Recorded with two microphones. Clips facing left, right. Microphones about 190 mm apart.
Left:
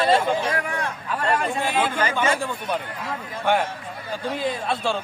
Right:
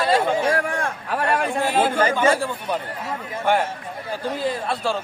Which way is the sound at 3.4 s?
10° right (ahead or behind).